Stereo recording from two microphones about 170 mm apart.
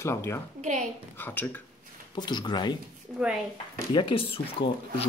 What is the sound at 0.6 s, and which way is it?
Speech, 45° right (ahead or behind).